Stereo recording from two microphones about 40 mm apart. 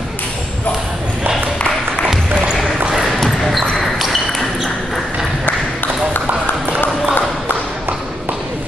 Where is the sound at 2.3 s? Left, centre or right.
Right.